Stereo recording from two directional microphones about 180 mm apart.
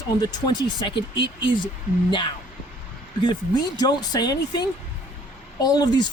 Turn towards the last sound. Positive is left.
turn(degrees=25)  # may be behind; listen again after turning